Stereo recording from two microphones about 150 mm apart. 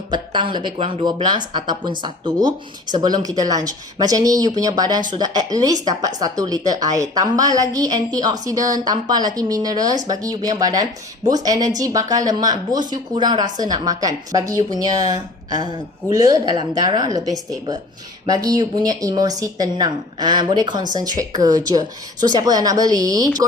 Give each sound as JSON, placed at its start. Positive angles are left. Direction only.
{"t": 0.1, "sound": "speech", "side_deg": -30}